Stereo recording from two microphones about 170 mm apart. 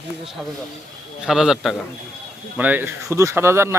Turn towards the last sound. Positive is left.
turn(degrees=-15)  # may be behind; listen again after turning